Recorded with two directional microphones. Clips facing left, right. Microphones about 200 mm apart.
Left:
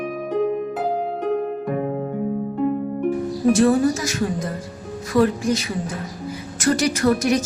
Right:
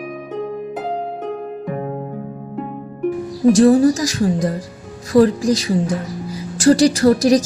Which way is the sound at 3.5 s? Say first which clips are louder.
Right 5 dB; 35° right (ahead or behind).